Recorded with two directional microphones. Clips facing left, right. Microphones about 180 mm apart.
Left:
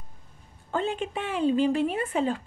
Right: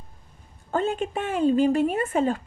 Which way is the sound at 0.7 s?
45° right (ahead or behind).